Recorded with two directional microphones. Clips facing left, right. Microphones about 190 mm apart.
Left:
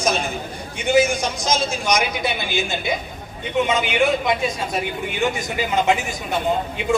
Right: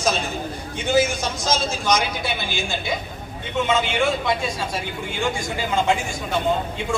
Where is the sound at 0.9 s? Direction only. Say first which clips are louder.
Left 3 dB; 15° left (ahead or behind).